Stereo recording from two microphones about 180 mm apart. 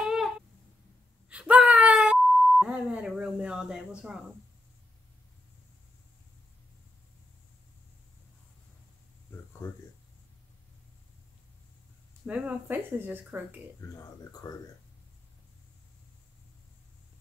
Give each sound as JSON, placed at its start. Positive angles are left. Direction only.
{"t": 0.0, "sound": "a sound", "side_deg": 0}
{"t": 1.3, "sound": "beep", "side_deg": -5}
{"t": 12.3, "sound": "speech", "side_deg": -10}
{"t": 14.4, "sound": "speech", "side_deg": 20}